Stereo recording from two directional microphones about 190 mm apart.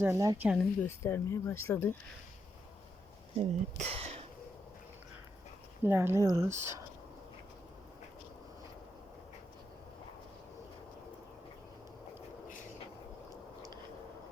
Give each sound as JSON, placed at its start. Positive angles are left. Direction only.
{"t": 0.0, "sound": "speech", "side_deg": -15}
{"t": 0.4, "sound": "speech", "side_deg": 0}
{"t": 0.9, "sound": "speech", "side_deg": 15}
{"t": 3.3, "sound": "speech", "side_deg": -30}
{"t": 5.8, "sound": "speech", "side_deg": -10}